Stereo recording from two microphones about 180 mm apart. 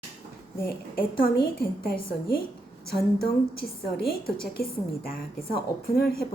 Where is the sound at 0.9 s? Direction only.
55° left (ahead or behind).